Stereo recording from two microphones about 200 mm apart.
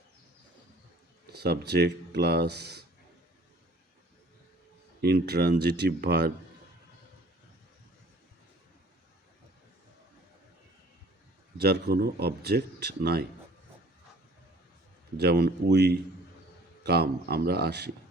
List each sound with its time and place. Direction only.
1.3 s speech: 55° right (ahead or behind)
4.9 s speech: 55° right (ahead or behind)
11.5 s speech: 50° right (ahead or behind)
15.2 s speech: 55° right (ahead or behind)